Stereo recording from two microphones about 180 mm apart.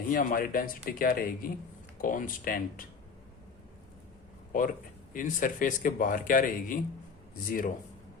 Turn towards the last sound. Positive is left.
turn(degrees=50)  # may be behind; listen again after turning